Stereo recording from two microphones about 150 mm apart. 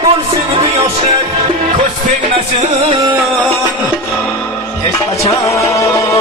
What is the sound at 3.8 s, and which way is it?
Music, 15° left (ahead or behind).